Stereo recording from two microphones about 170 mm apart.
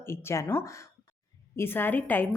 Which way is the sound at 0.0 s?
15° left (ahead or behind).